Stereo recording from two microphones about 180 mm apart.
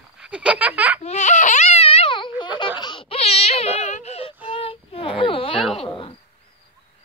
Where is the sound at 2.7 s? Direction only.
25° left (ahead or behind).